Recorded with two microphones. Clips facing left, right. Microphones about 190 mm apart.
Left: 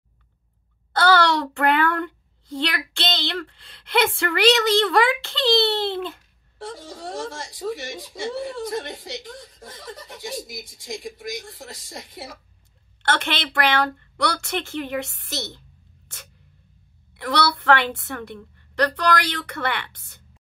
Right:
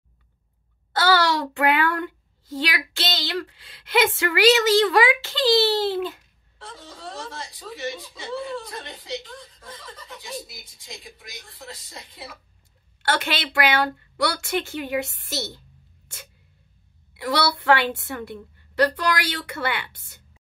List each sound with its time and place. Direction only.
0.9 s a woman's voice: 5° right (ahead or behind)
6.7 s speech: 80° left
9.9 s speech: 85° left
13.0 s a woman's voice: 5° right (ahead or behind)
17.2 s a woman's voice: 5° right (ahead or behind)